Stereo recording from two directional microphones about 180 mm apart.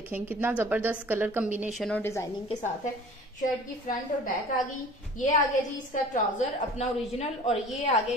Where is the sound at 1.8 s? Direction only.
10° left (ahead or behind).